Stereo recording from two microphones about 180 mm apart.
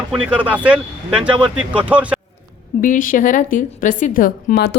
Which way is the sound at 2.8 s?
50° left (ahead or behind).